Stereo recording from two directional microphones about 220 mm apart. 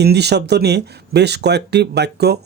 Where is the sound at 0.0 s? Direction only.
50° right (ahead or behind).